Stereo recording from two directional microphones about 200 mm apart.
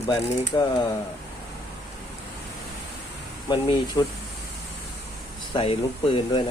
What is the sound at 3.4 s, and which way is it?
Speech, 20° left (ahead or behind).